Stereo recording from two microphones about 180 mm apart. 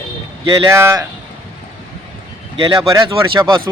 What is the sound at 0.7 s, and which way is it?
Speech, 15° right (ahead or behind).